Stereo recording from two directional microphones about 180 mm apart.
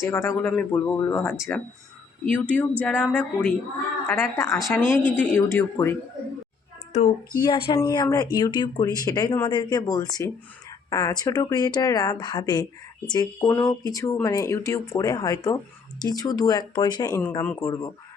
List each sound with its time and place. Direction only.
0.0 s speech: 15° left (ahead or behind)
7.4 s speech: 25° left (ahead or behind)